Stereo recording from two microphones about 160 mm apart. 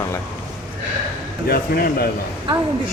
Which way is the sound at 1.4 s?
75° left (ahead or behind).